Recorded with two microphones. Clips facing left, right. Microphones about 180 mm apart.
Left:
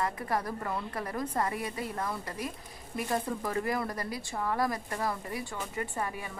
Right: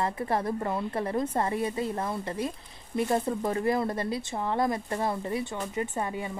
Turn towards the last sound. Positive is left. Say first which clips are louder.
# right 4 dB
turn(degrees=-25)  # may be behind; listen again after turning